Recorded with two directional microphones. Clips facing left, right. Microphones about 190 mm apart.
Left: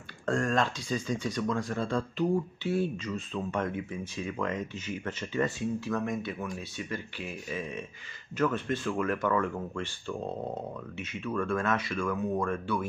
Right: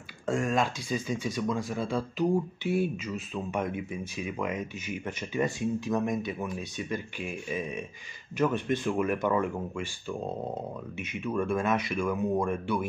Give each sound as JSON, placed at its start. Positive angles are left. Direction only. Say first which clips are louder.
{"t": 0.3, "sound": "speech", "louder": "even", "side_deg": -10}